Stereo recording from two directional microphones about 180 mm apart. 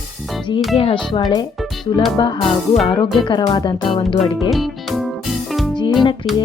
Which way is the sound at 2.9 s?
25° left (ahead or behind).